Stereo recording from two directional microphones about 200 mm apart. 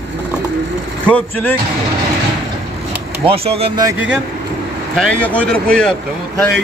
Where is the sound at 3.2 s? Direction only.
30° right (ahead or behind).